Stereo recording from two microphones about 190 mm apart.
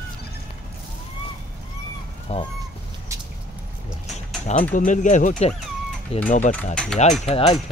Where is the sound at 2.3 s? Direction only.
35° left (ahead or behind).